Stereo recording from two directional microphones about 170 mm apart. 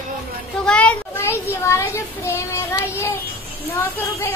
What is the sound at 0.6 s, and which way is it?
A child's voice, 5° left (ahead or behind).